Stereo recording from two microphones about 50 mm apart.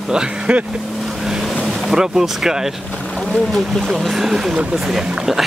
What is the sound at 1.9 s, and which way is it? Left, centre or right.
Speech, centre.